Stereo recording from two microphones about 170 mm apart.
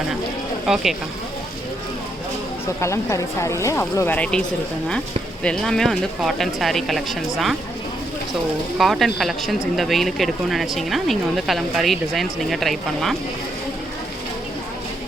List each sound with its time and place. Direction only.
0.7 s speech: centre (ahead or behind)
2.8 s speech: 15° left (ahead or behind); by 7.2 s centre (ahead or behind)
8.8 s speech: centre (ahead or behind)